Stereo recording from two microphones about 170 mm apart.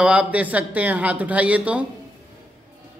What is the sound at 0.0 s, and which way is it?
Speech, 5° right (ahead or behind).